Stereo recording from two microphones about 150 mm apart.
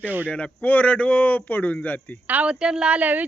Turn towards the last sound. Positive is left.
turn(degrees=-10)  # may be behind; listen again after turning